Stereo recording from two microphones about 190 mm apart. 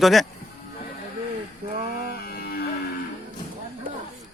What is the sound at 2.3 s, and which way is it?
Music, 55° left (ahead or behind).